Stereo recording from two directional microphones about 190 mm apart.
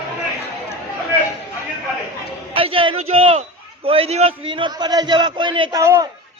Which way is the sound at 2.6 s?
30° right (ahead or behind).